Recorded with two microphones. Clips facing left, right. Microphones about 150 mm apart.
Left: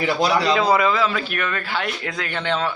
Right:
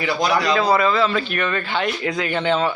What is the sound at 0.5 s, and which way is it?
Speech, 10° left (ahead or behind).